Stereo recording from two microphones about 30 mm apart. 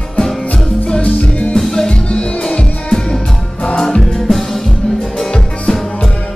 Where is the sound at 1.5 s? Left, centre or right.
Centre.